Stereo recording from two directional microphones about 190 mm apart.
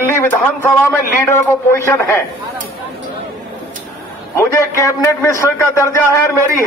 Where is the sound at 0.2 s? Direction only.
10° left (ahead or behind).